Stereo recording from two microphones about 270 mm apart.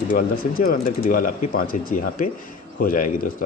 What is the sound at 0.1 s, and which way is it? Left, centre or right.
Speech, left.